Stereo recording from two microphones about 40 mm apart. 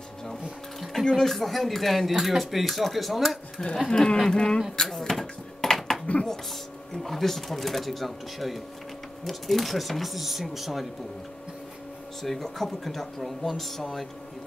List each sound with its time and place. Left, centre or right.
0.7 s speech: centre
3.9 s speech: centre
4.8 s a sound: centre
6.1 s a sound: left
7.0 s speech: centre
12.2 s speech: centre